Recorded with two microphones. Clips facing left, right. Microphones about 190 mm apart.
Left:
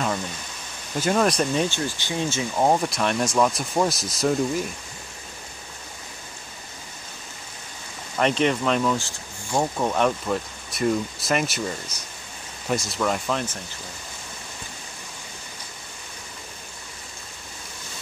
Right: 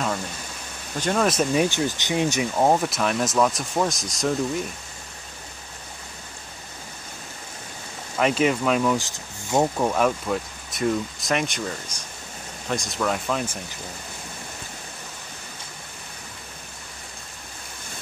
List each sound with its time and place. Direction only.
0.9 s speech: 5° left (ahead or behind); by 2.6 s 15° right (ahead or behind)
2.6 s speech: 5° right (ahead or behind)
8.2 s speech: 5° right (ahead or behind)
8.9 s speech: 20° right (ahead or behind)
9.8 s speech: 5° right (ahead or behind)